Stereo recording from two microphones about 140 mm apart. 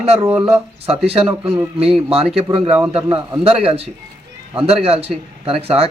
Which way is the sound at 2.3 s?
45° right (ahead or behind).